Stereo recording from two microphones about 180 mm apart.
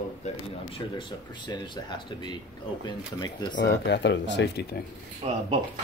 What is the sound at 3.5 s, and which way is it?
Speech, 70° left (ahead or behind).